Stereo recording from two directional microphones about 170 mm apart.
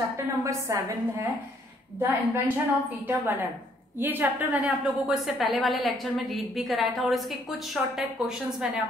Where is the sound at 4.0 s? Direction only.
10° right (ahead or behind).